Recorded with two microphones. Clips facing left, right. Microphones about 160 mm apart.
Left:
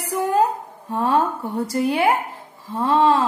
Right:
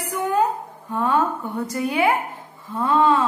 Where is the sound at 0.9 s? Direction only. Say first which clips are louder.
Left 1 dB; 35° left (ahead or behind).